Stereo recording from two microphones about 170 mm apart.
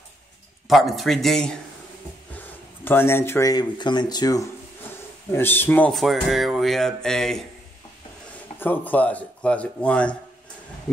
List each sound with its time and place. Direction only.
0.7 s speech: centre (ahead or behind); by 4.5 s 25° left (ahead or behind)
5.3 s speech: 10° left (ahead or behind)
8.5 s speech: 10° left (ahead or behind)